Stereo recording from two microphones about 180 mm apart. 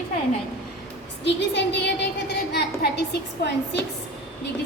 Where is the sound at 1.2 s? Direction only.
75° left (ahead or behind).